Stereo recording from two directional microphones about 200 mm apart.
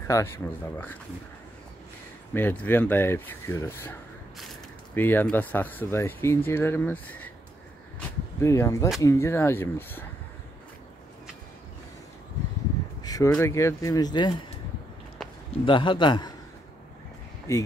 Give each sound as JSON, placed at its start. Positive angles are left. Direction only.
{"t": 0.0, "sound": "speech", "side_deg": 15}
{"t": 2.3, "sound": "speech", "side_deg": 10}
{"t": 8.4, "sound": "speech", "side_deg": 15}
{"t": 13.0, "sound": "a sound", "side_deg": 20}
{"t": 13.3, "sound": "speech", "side_deg": 15}
{"t": 15.2, "sound": "a sound", "side_deg": 5}
{"t": 15.6, "sound": "a man's voice", "side_deg": 25}
{"t": 17.5, "sound": "speech", "side_deg": 15}